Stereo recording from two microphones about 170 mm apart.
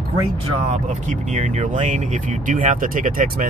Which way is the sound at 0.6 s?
40° right (ahead or behind).